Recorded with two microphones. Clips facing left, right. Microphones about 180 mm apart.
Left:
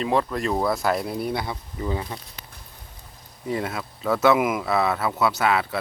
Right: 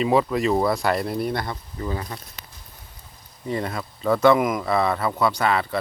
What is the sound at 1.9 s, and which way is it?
Speech, 20° left (ahead or behind).